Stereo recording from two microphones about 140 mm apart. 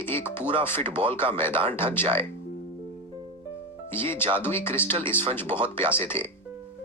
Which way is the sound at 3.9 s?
15° left (ahead or behind).